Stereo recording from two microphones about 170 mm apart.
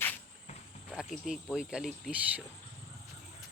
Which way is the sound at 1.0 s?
Centre (ahead or behind).